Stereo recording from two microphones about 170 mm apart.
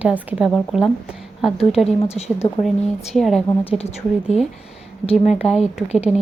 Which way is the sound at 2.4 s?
35° left (ahead or behind).